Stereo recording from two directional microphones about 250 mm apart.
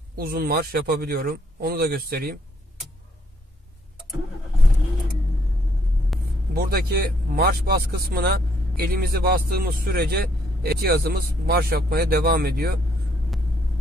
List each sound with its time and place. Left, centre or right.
0.1 s speech: right
6.1 s vehicle: centre
6.5 s speech: right